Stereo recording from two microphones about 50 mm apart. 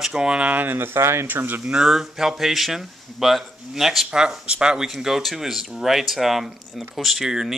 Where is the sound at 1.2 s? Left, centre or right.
Right.